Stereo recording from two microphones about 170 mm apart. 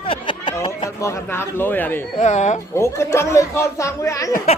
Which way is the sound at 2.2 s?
45° left (ahead or behind).